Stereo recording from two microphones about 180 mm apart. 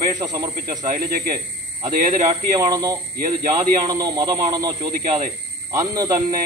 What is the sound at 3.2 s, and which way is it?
Speech, 50° right (ahead or behind).